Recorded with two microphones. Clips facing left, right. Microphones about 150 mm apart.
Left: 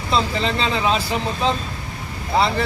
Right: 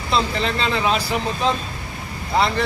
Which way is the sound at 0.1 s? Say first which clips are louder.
Left 1 dB; centre (ahead or behind).